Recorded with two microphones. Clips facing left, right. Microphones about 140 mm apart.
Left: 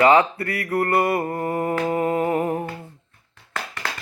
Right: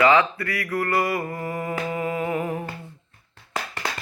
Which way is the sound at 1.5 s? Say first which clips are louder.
Left 6 dB; 40° left (ahead or behind).